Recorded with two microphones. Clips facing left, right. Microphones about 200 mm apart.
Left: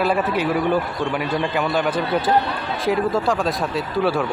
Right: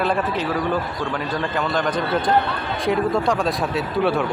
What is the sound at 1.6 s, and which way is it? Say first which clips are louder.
A man's voice: even; 10° left (ahead or behind).